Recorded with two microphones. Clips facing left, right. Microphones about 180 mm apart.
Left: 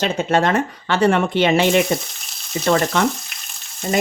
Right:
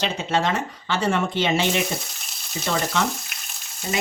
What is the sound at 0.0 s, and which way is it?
Speech, 55° left (ahead or behind).